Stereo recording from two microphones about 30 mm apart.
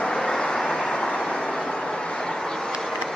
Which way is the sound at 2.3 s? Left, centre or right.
Centre.